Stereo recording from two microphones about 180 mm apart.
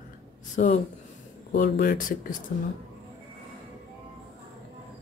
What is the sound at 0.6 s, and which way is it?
Speech, 45° left (ahead or behind).